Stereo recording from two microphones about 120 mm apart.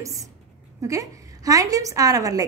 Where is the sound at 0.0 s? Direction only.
25° right (ahead or behind).